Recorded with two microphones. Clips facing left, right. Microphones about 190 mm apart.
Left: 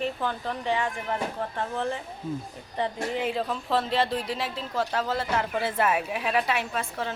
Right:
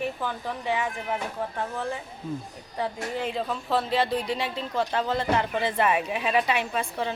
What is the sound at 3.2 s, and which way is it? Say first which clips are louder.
Speech: even; centre (ahead or behind).